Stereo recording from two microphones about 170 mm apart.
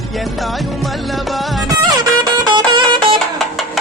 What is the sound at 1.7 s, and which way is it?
Music, 20° right (ahead or behind).